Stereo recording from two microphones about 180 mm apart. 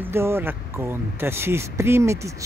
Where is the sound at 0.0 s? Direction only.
15° right (ahead or behind).